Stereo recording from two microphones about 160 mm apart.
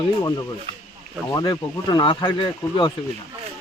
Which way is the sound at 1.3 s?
25° left (ahead or behind).